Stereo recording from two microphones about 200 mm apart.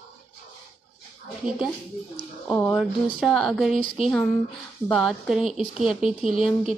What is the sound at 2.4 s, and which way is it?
A woman's voice, 5° left (ahead or behind).